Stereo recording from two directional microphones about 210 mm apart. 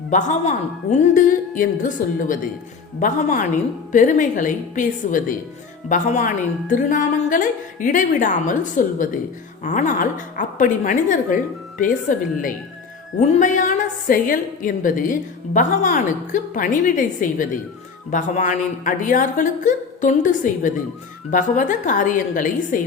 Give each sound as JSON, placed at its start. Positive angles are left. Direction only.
{"t": 0.1, "sound": "a woman's voice", "side_deg": 35}